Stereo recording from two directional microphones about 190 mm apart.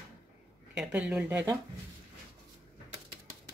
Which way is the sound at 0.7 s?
5° right (ahead or behind).